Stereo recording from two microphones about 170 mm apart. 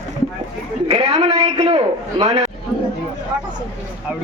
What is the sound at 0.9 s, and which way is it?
A man's voice, 40° right (ahead or behind).